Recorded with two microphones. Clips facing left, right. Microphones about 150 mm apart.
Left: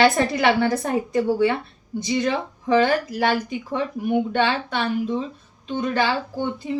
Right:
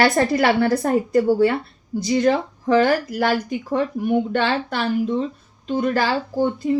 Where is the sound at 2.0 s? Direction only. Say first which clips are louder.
Right 5 dB; 40° right (ahead or behind).